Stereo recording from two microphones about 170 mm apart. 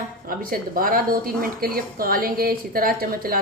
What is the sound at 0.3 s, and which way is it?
A woman's voice, 55° right (ahead or behind).